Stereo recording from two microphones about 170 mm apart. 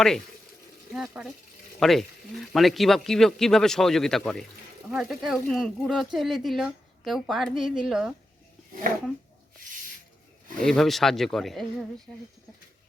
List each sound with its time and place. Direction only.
0.9 s speech: 5° right (ahead or behind)
10.6 s speech: centre (ahead or behind)